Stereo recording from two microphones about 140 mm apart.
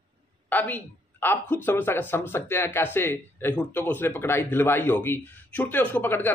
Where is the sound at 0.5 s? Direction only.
10° left (ahead or behind).